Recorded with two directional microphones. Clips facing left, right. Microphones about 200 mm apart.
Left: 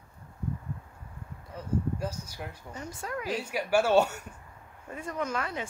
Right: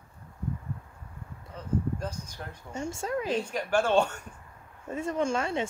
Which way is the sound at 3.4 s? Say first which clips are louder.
Left 1 dB; 10° left (ahead or behind).